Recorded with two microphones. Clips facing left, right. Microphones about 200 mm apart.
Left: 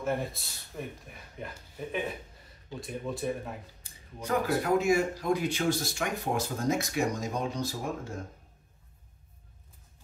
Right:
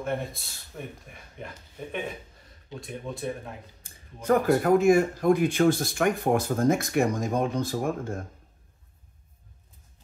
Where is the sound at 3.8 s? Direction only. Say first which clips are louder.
Left 1 dB; 50° right (ahead or behind).